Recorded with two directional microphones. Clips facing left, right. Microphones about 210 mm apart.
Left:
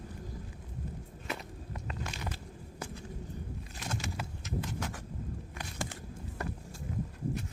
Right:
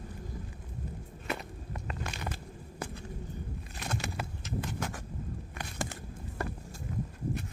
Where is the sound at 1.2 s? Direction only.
60° right (ahead or behind).